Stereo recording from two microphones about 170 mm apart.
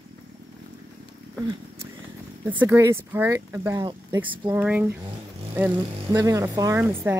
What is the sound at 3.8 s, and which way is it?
Speech, 30° right (ahead or behind).